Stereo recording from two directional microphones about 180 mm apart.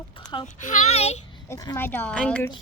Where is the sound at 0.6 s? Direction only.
40° left (ahead or behind).